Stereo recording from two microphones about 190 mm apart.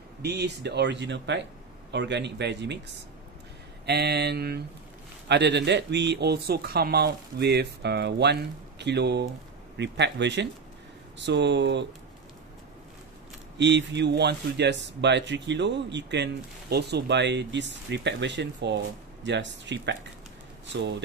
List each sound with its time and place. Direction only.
0.2 s speech: 60° right (ahead or behind)
3.8 s speech: 60° right (ahead or behind)
13.6 s speech: 65° right (ahead or behind)